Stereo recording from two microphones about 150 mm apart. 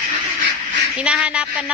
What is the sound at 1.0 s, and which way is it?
Speech, 5° right (ahead or behind).